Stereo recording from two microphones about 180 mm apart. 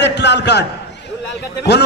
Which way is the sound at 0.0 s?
75° left (ahead or behind).